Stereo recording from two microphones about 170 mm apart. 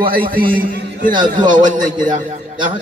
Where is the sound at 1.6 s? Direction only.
50° right (ahead or behind).